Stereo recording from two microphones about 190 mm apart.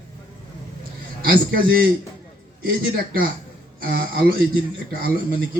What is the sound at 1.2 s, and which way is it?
Speech, 50° right (ahead or behind).